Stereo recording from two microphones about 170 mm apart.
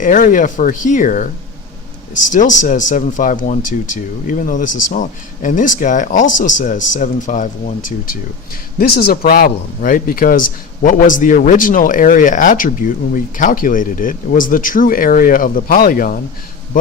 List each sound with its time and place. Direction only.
0.0 s speech: 50° left (ahead or behind)
8.8 s speech: 60° left (ahead or behind)